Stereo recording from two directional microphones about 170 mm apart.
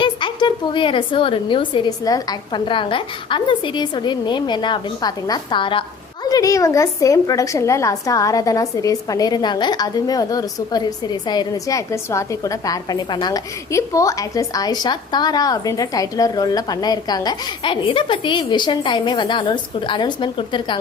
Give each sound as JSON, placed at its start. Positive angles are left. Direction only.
{"t": 0.0, "sound": "a woman's voice", "side_deg": 25}